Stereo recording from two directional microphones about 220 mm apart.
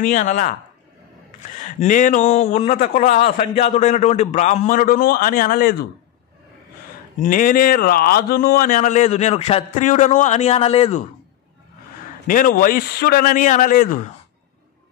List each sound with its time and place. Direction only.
0.0 s a man's voice: 35° left (ahead or behind)
1.6 s a man's voice: 35° left (ahead or behind)
7.2 s a man's voice: 40° left (ahead or behind)
12.3 s a man's voice: 40° left (ahead or behind)